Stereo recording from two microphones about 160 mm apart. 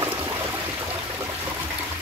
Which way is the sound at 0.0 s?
15° right (ahead or behind).